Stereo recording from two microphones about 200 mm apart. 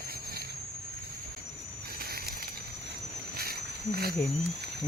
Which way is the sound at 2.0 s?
50° right (ahead or behind).